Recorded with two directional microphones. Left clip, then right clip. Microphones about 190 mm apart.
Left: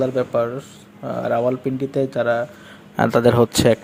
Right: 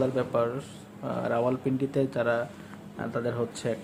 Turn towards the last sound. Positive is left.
turn(degrees=55)  # may be behind; listen again after turning